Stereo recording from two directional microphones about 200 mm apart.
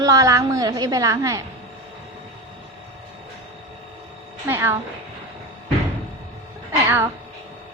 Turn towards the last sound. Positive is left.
turn(degrees=-10)  # may be behind; listen again after turning